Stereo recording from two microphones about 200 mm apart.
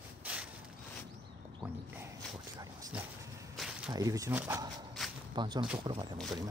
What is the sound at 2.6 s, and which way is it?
Vehicle, 15° right (ahead or behind).